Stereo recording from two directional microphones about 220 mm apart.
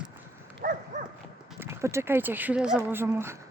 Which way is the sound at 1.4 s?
10° right (ahead or behind).